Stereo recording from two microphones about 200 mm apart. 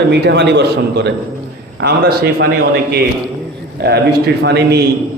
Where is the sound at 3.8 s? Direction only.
55° right (ahead or behind).